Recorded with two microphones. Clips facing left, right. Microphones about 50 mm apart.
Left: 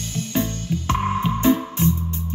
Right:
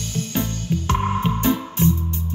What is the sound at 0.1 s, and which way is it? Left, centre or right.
Music, left.